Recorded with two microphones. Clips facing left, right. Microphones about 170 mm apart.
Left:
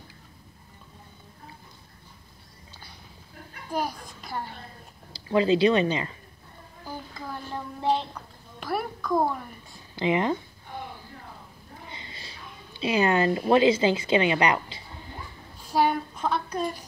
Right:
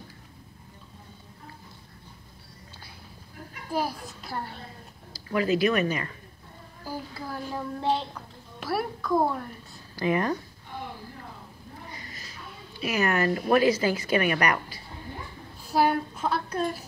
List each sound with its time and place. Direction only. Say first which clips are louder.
3.7 s a child's voice: right 1 dB; 5° right (ahead or behind)
5.3 s a woman's voice: left 3 dB; 25° left (ahead or behind)
6.8 s a woman's voice: right 2 dB; 5° right (ahead or behind)
9.9 s a woman's voice: left 1 dB; 20° left (ahead or behind)
11.9 s a sound: even; 25° left (ahead or behind)
12.7 s a woman's voice: left 3 dB; 25° left (ahead or behind)
15.7 s a sound: even; 5° right (ahead or behind)